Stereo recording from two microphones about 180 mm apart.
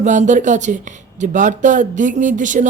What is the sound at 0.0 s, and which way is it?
Speech, 45° right (ahead or behind).